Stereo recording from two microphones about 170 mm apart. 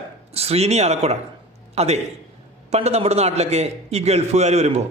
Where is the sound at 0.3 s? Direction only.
35° right (ahead or behind).